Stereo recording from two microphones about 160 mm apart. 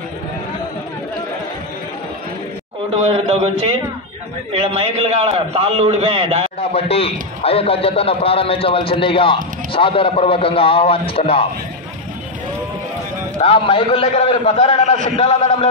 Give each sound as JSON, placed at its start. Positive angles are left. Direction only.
{"t": 2.9, "sound": "a man's voice", "side_deg": -35}
{"t": 6.6, "sound": "a man's voice", "side_deg": 40}
{"t": 13.4, "sound": "a man's voice", "side_deg": 35}